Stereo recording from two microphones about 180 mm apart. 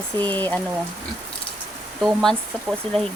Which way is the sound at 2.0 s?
Centre (ahead or behind).